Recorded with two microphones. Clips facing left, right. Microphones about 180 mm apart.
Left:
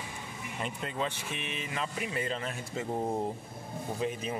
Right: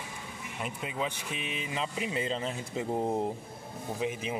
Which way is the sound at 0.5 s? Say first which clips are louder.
Even; 5° right (ahead or behind).